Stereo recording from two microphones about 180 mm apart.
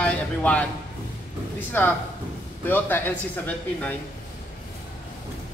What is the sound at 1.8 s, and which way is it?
Speech, 10° left (ahead or behind).